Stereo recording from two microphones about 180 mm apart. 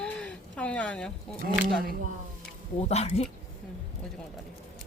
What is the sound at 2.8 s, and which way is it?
Speech, 35° left (ahead or behind).